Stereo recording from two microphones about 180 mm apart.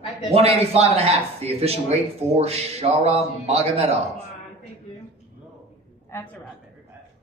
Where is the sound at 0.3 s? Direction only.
35° right (ahead or behind).